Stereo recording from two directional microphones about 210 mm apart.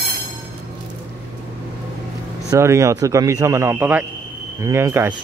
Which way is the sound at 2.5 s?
15° right (ahead or behind).